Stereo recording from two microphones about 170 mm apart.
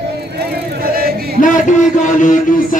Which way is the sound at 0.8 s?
60° right (ahead or behind).